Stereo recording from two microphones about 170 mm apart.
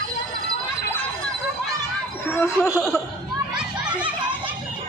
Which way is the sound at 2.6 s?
5° right (ahead or behind).